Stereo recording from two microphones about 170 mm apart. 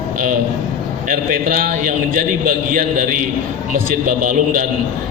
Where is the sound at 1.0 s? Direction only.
55° right (ahead or behind).